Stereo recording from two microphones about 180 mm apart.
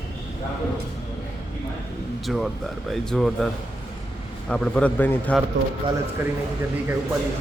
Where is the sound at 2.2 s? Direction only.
Centre (ahead or behind).